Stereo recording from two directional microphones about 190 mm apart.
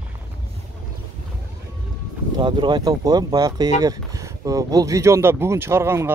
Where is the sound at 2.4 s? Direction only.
25° right (ahead or behind).